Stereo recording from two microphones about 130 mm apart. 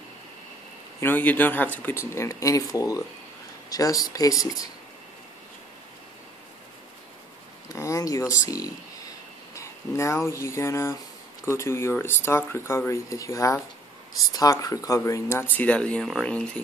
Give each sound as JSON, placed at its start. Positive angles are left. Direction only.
{"t": 1.0, "sound": "speech", "side_deg": 15}
{"t": 7.7, "sound": "speech", "side_deg": 25}